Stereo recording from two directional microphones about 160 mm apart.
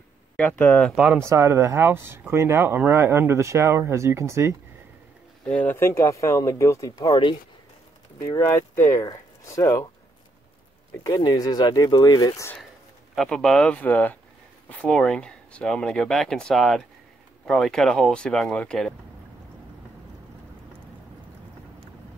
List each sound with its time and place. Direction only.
0.4 s speech: 10° left (ahead or behind)
1.0 s speech: 15° right (ahead or behind)
5.4 s speech: 10° left (ahead or behind)
8.3 s speech: 15° left (ahead or behind)
11.1 s speech: 25° left (ahead or behind)
13.1 s speech: centre (ahead or behind)